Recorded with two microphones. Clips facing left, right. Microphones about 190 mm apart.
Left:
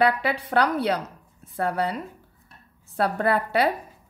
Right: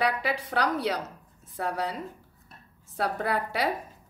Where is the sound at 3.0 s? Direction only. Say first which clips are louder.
Left 5 dB; 60° left (ahead or behind).